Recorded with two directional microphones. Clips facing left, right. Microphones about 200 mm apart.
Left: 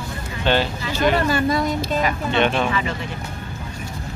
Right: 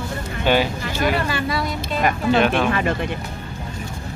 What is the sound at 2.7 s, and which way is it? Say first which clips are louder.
Speech: right 4 dB; 50° right (ahead or behind).